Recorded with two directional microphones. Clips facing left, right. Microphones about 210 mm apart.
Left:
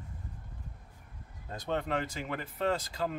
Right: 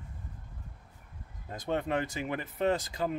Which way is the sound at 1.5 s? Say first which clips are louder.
Right 2 dB; 15° right (ahead or behind).